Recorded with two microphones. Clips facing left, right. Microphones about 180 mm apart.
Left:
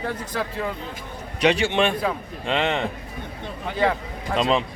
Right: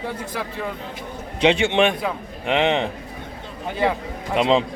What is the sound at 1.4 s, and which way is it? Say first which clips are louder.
A man's voice: right 2 dB; 25° right (ahead or behind).